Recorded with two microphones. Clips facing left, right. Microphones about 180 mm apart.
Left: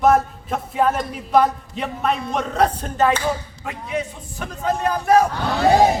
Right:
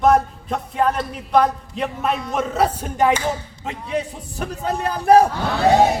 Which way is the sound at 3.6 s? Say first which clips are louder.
Right 1 dB; 35° right (ahead or behind).